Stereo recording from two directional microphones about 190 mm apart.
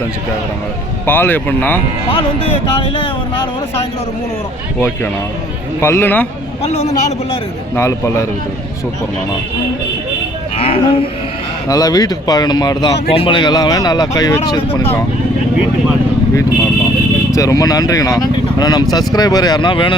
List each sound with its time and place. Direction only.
1.0 s speech: 10° left (ahead or behind)
2.0 s speech: 30° left (ahead or behind)
5.8 s speech: 10° left (ahead or behind)
6.7 s speech: 35° left (ahead or behind)
7.8 s speech: 15° left (ahead or behind)
10.6 s speech: 30° left (ahead or behind)
17.3 s speech: 15° left (ahead or behind)